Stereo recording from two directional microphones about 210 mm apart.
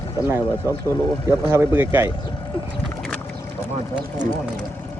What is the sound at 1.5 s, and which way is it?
Speech, 10° right (ahead or behind).